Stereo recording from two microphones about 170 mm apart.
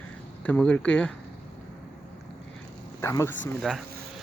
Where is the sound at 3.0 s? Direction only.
15° left (ahead or behind).